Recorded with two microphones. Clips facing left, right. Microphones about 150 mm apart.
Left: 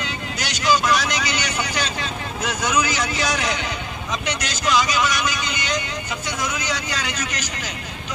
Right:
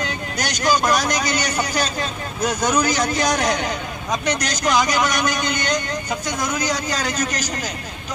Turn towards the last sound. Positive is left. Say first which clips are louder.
# right 4 dB
turn(degrees=-40)  # may be behind; listen again after turning